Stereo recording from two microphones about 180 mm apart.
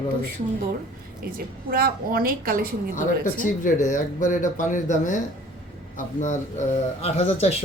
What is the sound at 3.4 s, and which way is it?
Speech, 45° left (ahead or behind).